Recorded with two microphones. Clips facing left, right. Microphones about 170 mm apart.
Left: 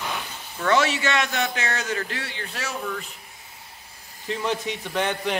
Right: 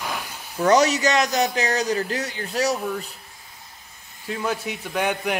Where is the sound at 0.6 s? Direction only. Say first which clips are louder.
Right 4 dB; 40° right (ahead or behind).